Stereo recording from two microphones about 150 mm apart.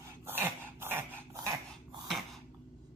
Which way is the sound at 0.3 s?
15° right (ahead or behind).